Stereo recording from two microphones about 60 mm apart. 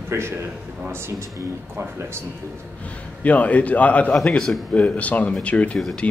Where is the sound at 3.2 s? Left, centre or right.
Left.